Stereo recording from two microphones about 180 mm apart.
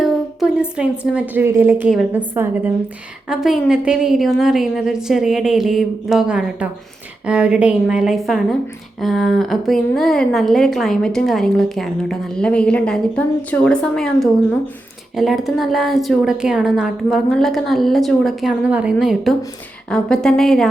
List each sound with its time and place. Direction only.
0.0 s a woman's voice: 5° right (ahead or behind)